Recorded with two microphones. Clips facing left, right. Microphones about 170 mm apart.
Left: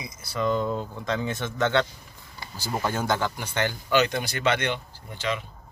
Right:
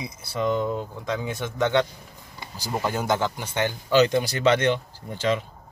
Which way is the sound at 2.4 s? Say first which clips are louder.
Even; 15° right (ahead or behind).